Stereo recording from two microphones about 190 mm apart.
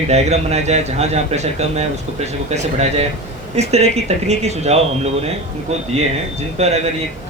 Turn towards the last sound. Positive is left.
turn(degrees=-35)  # may be behind; listen again after turning